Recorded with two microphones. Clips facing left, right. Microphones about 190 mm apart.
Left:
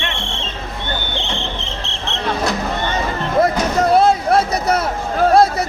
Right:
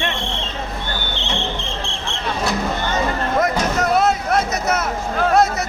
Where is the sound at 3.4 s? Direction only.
30° left (ahead or behind).